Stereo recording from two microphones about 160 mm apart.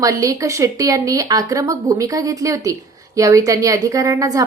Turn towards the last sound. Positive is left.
turn(degrees=-20)  # may be behind; listen again after turning